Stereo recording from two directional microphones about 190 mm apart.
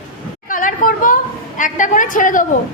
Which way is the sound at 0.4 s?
45° left (ahead or behind).